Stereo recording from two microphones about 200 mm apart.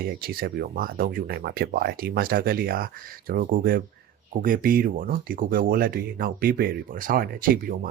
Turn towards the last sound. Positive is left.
turn(degrees=-45)  # may be behind; listen again after turning